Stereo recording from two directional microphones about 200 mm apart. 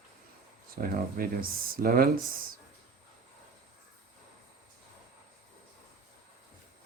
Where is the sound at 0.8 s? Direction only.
45° right (ahead or behind).